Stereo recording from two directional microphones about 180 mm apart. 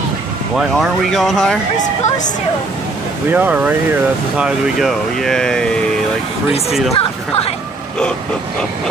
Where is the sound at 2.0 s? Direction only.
45° left (ahead or behind).